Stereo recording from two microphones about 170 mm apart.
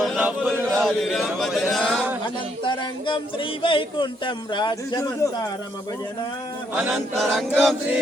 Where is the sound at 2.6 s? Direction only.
30° left (ahead or behind).